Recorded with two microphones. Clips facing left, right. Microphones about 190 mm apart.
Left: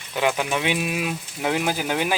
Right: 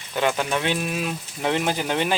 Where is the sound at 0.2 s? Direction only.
10° left (ahead or behind).